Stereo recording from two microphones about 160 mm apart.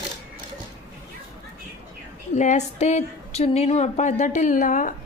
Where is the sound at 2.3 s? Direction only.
50° left (ahead or behind).